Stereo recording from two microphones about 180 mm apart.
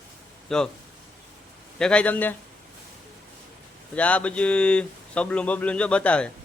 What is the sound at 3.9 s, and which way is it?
Speech, 5° left (ahead or behind).